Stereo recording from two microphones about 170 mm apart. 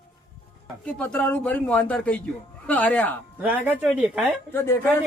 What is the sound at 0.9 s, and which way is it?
Speech, 10° left (ahead or behind).